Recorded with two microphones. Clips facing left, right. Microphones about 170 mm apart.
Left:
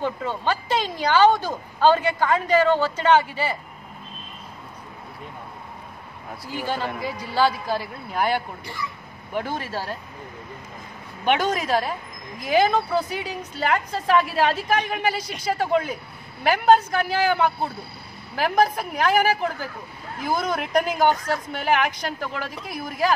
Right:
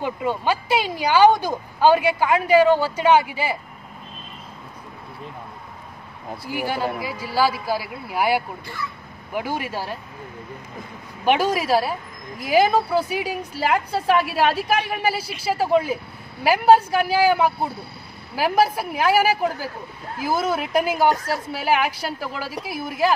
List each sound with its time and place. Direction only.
0.0 s speech: 10° right (ahead or behind)
6.5 s speech: 10° right (ahead or behind)
11.2 s speech: 5° right (ahead or behind)